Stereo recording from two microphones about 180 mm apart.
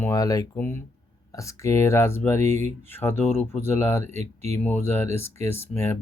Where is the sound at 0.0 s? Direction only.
20° left (ahead or behind).